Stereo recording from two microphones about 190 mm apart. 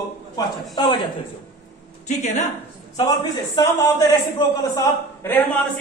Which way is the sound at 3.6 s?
20° left (ahead or behind).